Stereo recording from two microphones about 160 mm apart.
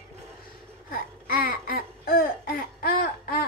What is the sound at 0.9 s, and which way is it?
Laughter, 65° left (ahead or behind).